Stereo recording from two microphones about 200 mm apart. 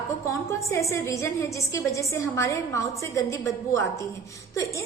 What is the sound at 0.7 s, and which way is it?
A woman's voice, 15° left (ahead or behind).